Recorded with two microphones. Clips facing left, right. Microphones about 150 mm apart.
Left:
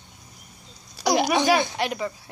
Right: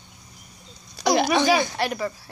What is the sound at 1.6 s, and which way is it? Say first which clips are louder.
Speech: right 1 dB; 20° left (ahead or behind).